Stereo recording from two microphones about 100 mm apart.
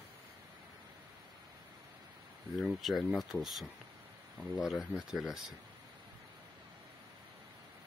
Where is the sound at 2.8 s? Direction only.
Centre (ahead or behind).